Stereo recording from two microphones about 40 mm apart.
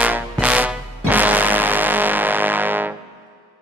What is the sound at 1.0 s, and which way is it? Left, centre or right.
Music, right.